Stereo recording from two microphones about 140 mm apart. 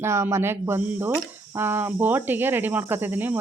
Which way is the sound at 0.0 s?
20° right (ahead or behind).